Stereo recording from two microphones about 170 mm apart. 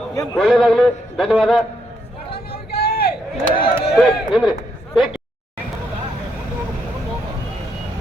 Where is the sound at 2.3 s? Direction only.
65° left (ahead or behind).